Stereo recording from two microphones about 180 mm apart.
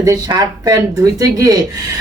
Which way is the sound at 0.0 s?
20° right (ahead or behind).